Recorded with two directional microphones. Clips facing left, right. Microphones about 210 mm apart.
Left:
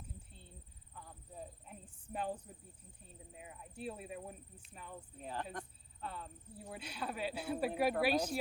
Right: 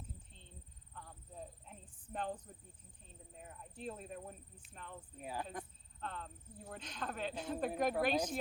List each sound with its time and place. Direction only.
0.3 s a sound: 10° left (ahead or behind)
3.3 s speech: 10° left (ahead or behind)
5.2 s speech: 10° right (ahead or behind)
6.0 s speech: 10° left (ahead or behind)